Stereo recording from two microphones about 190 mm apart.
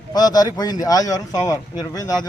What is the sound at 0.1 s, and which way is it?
A man's voice, 20° left (ahead or behind).